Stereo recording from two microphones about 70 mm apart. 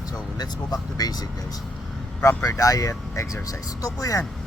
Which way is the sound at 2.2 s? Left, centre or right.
Left.